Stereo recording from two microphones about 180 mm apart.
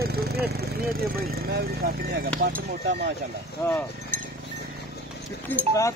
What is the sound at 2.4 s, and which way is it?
Speech, 60° right (ahead or behind).